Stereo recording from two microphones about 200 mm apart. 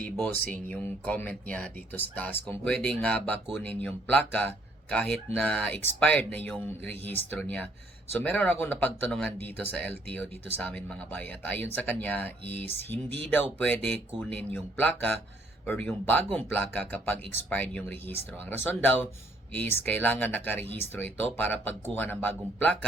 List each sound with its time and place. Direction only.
0.0 s speech: 5° left (ahead or behind)